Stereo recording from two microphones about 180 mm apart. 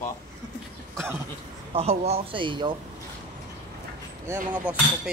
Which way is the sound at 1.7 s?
35° right (ahead or behind).